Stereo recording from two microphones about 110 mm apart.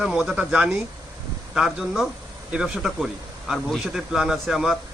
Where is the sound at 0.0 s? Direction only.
5° right (ahead or behind).